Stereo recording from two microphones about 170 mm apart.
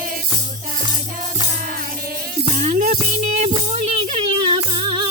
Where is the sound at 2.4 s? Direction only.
40° right (ahead or behind).